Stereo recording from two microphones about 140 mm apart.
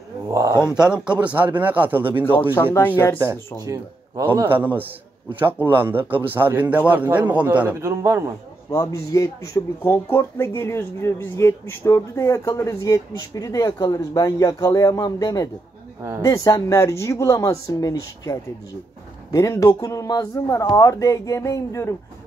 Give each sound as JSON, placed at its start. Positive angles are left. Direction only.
{"t": 0.3, "sound": "a sound", "side_deg": -25}
{"t": 0.7, "sound": "a man's voice", "side_deg": -5}
{"t": 2.5, "sound": "speech", "side_deg": 15}
{"t": 3.2, "sound": "a man's voice", "side_deg": -25}
{"t": 8.6, "sound": "speech", "side_deg": 20}